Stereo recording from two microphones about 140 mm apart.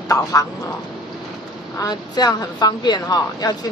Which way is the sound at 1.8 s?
30° left (ahead or behind).